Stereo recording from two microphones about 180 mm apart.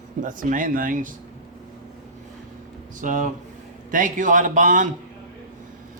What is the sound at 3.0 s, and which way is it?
A man's voice, 45° right (ahead or behind).